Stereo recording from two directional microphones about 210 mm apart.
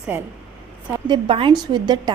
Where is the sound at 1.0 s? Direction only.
25° right (ahead or behind).